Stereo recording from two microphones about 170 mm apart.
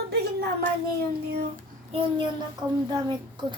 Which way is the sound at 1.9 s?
35° right (ahead or behind).